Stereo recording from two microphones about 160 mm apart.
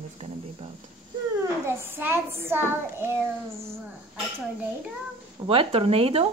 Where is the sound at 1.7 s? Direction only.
15° right (ahead or behind).